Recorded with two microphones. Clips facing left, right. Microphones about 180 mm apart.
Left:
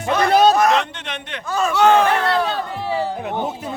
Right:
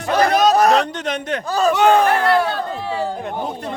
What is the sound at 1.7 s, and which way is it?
Speech, 15° right (ahead or behind).